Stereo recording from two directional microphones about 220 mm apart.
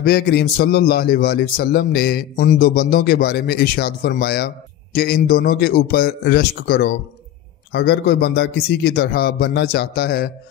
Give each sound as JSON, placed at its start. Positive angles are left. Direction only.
{"t": 0.0, "sound": "a man's voice", "side_deg": 45}